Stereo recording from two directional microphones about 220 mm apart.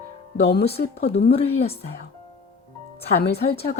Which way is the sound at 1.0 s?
45° left (ahead or behind).